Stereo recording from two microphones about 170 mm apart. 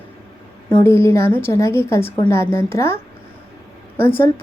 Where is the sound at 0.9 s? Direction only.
15° left (ahead or behind).